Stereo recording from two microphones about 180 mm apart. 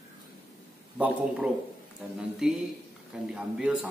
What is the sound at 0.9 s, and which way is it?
A man's voice, 5° right (ahead or behind).